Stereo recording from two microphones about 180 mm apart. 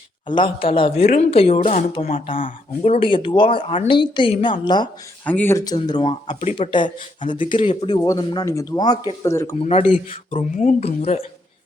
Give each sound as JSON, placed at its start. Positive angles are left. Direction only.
{"t": 0.3, "sound": "speech", "side_deg": 25}
{"t": 5.2, "sound": "speech", "side_deg": 10}
{"t": 9.6, "sound": "speech", "side_deg": 35}